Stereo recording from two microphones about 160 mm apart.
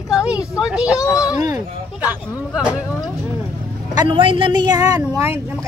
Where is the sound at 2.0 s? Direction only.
10° right (ahead or behind).